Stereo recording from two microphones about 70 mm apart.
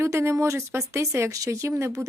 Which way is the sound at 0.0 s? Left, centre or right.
Right.